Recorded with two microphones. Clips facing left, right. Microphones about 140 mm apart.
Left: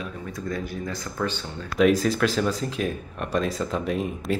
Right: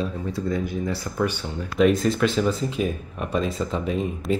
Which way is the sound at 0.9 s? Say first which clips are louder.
Right 3 dB; 10° right (ahead or behind).